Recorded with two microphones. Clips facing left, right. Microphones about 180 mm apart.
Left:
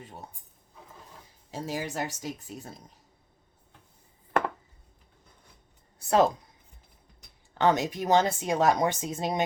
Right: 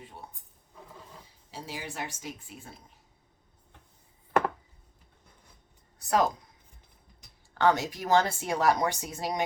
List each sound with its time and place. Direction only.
1.5 s speech: 45° left (ahead or behind)
6.0 s speech: 25° left (ahead or behind)
7.6 s speech: 20° left (ahead or behind)